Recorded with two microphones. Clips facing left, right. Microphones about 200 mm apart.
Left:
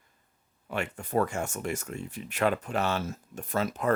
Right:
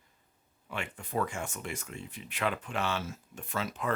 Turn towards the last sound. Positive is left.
turn(degrees=40)  # may be behind; listen again after turning